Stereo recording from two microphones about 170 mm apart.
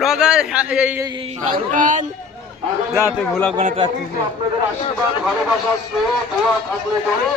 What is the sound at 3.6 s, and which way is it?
Speech, 40° right (ahead or behind).